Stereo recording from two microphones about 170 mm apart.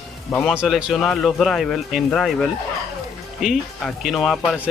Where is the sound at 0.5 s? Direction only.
5° right (ahead or behind).